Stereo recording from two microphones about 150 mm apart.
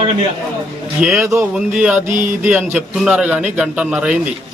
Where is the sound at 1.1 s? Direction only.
20° right (ahead or behind).